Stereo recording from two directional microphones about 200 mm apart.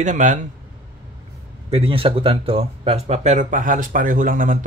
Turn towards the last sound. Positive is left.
turn(degrees=-45)  # may be behind; listen again after turning